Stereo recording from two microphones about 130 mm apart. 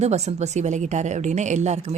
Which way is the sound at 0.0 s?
60° right (ahead or behind).